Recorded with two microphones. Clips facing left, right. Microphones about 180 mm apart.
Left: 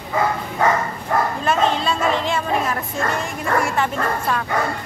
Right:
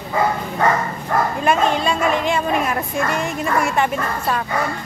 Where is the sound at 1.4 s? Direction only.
15° right (ahead or behind).